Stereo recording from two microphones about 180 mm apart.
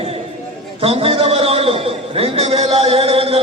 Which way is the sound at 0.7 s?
30° right (ahead or behind).